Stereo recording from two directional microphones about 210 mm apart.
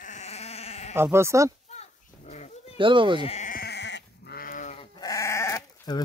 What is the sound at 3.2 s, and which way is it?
Sheep, 30° left (ahead or behind).